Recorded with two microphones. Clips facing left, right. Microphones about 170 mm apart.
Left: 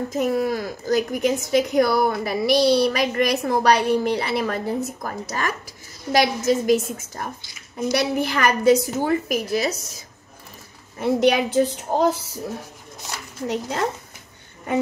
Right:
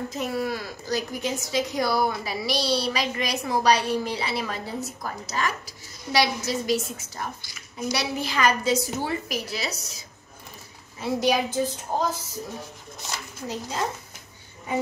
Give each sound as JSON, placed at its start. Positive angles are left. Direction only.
{"t": 0.1, "sound": "speech", "side_deg": 45}
{"t": 11.1, "sound": "speech", "side_deg": 65}
{"t": 13.5, "sound": "speech", "side_deg": 65}